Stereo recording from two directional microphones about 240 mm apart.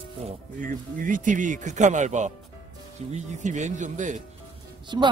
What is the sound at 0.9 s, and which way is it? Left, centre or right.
Speech, right.